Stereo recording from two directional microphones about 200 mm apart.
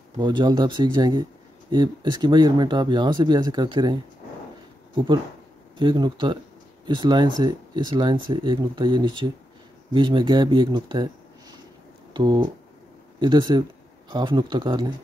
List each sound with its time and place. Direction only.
0.2 s speech: 20° right (ahead or behind)
12.1 s speech: 25° right (ahead or behind)